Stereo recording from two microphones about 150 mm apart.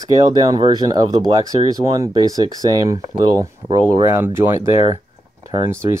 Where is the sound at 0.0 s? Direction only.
25° right (ahead or behind).